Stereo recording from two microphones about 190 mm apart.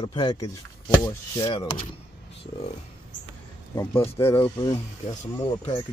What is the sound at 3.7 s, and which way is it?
Speech, 15° left (ahead or behind).